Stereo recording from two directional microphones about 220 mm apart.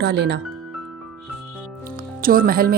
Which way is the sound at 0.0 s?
50° right (ahead or behind).